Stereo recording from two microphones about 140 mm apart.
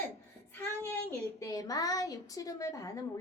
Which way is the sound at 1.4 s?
25° left (ahead or behind).